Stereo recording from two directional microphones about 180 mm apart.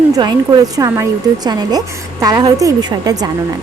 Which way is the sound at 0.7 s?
20° right (ahead or behind).